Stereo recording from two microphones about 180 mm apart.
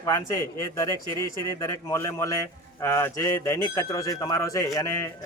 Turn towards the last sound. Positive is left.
turn(degrees=15)  # may be behind; listen again after turning